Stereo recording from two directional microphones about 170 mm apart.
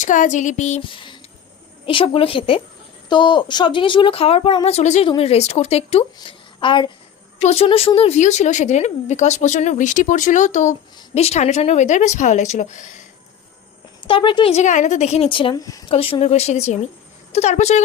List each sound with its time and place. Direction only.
0.0 s speech: 50° left (ahead or behind)
0.8 s a woman's voice: 30° left (ahead or behind)
7.3 s speech: 40° left (ahead or behind)
14.1 s speech: 30° left (ahead or behind)
15.9 s speech: 35° left (ahead or behind)